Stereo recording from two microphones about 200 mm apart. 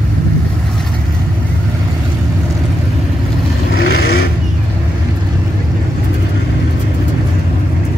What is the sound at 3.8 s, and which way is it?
Vehicle, 55° left (ahead or behind).